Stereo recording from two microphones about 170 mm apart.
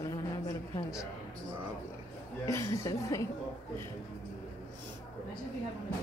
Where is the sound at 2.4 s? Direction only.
15° left (ahead or behind).